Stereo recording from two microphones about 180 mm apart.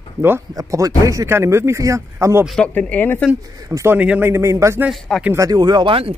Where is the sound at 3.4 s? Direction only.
20° right (ahead or behind).